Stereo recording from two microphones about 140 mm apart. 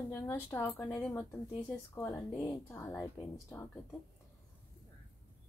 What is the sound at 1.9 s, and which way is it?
Speech, 20° left (ahead or behind).